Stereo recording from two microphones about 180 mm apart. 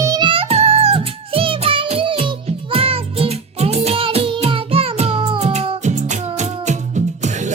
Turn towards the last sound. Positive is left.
turn(degrees=-40)  # may be behind; listen again after turning